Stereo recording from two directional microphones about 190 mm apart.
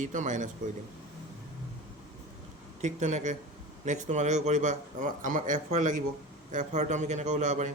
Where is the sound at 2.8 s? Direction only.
40° right (ahead or behind).